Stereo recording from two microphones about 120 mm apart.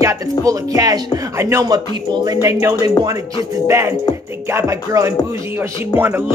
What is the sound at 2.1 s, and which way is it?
Speech, 35° right (ahead or behind).